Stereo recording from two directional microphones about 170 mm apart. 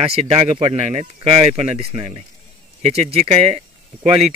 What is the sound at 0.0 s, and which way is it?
Speech, 35° right (ahead or behind).